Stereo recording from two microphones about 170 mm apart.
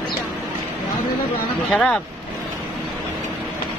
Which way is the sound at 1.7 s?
5° left (ahead or behind).